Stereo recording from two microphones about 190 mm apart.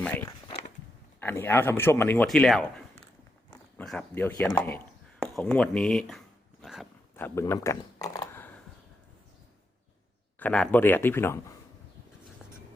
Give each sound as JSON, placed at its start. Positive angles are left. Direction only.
{"t": 0.0, "sound": "speech", "side_deg": 10}
{"t": 5.2, "sound": "dog", "side_deg": 0}
{"t": 7.2, "sound": "speech", "side_deg": 10}
{"t": 10.4, "sound": "speech", "side_deg": 5}